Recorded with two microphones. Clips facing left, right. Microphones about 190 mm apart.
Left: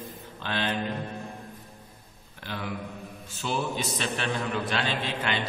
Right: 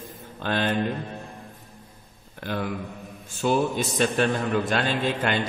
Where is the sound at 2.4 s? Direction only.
50° right (ahead or behind).